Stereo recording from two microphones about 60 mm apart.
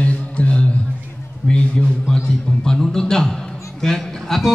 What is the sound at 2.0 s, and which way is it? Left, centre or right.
A man's voice, centre.